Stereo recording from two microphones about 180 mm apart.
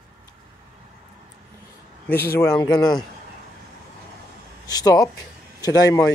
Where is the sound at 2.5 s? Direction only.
20° left (ahead or behind).